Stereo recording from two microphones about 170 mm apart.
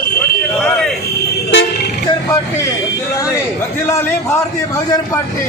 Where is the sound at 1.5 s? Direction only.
80° left.